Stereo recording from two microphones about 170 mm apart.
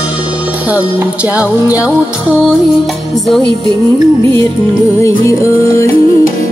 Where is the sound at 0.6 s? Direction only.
10° right (ahead or behind).